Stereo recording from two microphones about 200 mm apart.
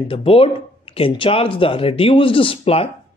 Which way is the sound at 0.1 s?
30° left (ahead or behind).